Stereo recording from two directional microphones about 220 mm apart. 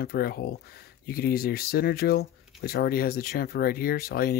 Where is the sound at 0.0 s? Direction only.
45° left (ahead or behind).